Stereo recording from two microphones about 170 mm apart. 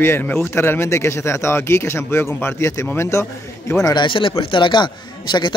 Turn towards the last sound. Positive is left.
turn(degrees=25)  # may be behind; listen again after turning